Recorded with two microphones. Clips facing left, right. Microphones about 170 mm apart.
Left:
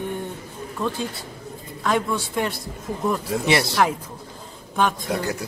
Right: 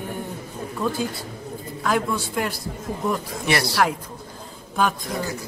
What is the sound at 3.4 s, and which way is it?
Speech, 20° left (ahead or behind).